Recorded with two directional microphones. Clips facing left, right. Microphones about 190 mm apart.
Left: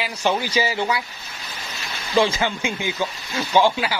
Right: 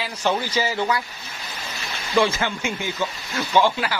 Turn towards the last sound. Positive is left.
turn(degrees=15)  # may be behind; listen again after turning